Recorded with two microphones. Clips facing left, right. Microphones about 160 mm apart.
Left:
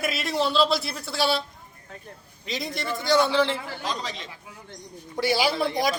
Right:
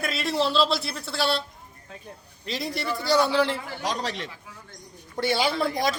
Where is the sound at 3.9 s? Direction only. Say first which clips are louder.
Right 3 dB; 65° right (ahead or behind).